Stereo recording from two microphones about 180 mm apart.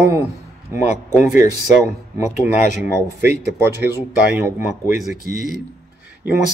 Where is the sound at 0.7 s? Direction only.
45° left (ahead or behind).